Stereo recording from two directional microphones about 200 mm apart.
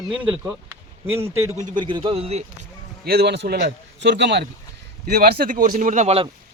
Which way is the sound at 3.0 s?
50° right (ahead or behind).